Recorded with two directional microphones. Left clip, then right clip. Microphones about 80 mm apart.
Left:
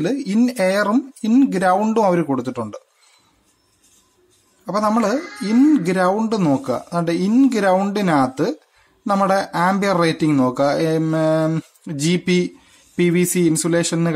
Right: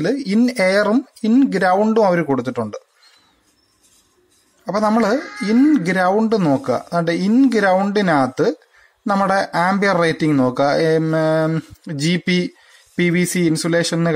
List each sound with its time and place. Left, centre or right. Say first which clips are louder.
0.0 s speech: right 2 dB; centre
4.6 s speech: right 2 dB; centre